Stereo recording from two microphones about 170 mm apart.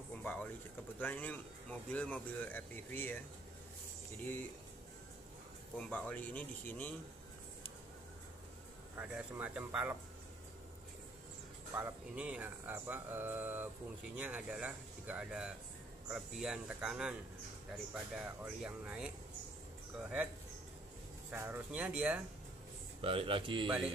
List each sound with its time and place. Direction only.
0.2 s a sound: 10° left (ahead or behind)
0.9 s speech: 10° left (ahead or behind)
5.8 s speech: 10° left (ahead or behind)
8.9 s speech: 10° right (ahead or behind)
11.7 s speech: 10° right (ahead or behind)
21.3 s speech: 10° right (ahead or behind)
23.0 s speech: 30° right (ahead or behind)